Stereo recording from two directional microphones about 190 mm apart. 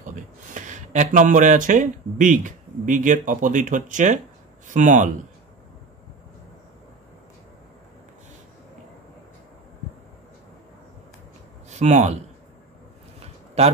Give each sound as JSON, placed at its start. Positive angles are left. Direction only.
{"t": 0.0, "sound": "speech", "side_deg": -40}
{"t": 11.7, "sound": "speech", "side_deg": -40}
{"t": 13.6, "sound": "speech", "side_deg": -35}